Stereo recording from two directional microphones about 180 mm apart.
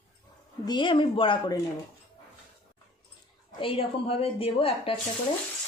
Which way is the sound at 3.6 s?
30° left (ahead or behind).